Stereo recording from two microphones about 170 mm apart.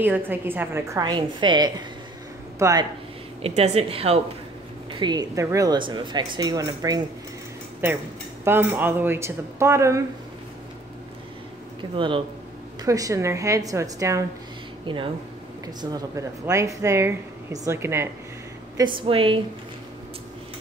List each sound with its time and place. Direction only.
0.0 s speech: 10° right (ahead or behind)
3.4 s a woman's voice: 40° right (ahead or behind)
4.9 s speech: 25° right (ahead or behind)
8.5 s speech: 10° right (ahead or behind)
11.8 s speech: 25° right (ahead or behind)
14.9 s speech: 30° right (ahead or behind)
18.9 s a woman's voice: 30° right (ahead or behind)